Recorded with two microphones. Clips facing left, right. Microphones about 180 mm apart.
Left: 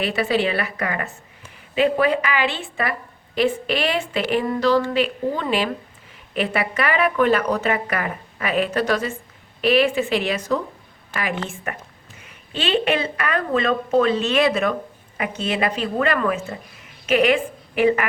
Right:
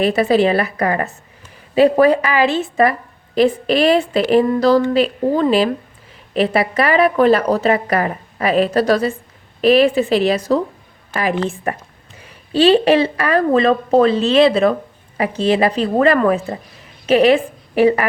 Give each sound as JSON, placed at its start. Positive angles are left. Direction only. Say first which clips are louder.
{"t": 0.0, "sound": "a woman's voice", "louder": "right 7 dB", "side_deg": -40}